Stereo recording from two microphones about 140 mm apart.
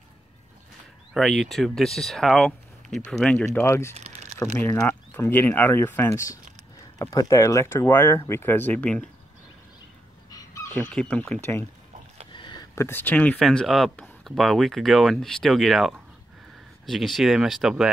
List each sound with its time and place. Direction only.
1.1 s speech: centre (ahead or behind)
3.4 s speech: 20° left (ahead or behind)
3.9 s crumpling: 55° right (ahead or behind)
4.6 s speech: 15° left (ahead or behind)
10.3 s chicken: 25° left (ahead or behind)
10.8 s speech: 10° left (ahead or behind)
12.3 s a sound: 35° left (ahead or behind)
12.7 s speech: 15° left (ahead or behind); by 17.9 s 5° right (ahead or behind)